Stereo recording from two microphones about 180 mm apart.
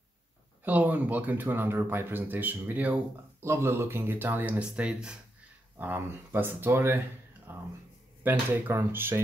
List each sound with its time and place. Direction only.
0.7 s speech: 10° right (ahead or behind)